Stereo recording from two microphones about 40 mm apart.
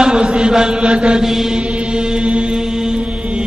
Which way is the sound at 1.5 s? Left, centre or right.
Right.